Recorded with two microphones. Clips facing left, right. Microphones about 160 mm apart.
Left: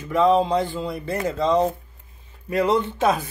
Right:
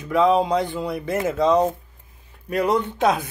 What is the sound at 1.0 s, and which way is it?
Speech, 20° right (ahead or behind).